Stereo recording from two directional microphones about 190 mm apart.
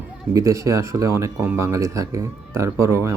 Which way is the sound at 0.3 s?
15° right (ahead or behind).